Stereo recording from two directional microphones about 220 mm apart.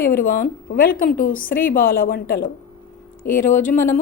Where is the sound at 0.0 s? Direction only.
40° left (ahead or behind).